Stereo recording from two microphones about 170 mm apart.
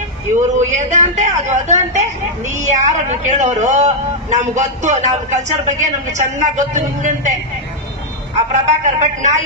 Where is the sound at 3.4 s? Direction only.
40° right (ahead or behind).